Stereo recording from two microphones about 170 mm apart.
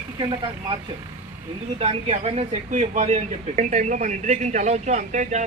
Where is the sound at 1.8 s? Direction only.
35° right (ahead or behind).